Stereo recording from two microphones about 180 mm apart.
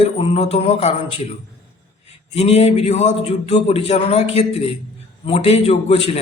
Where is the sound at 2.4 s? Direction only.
35° left (ahead or behind).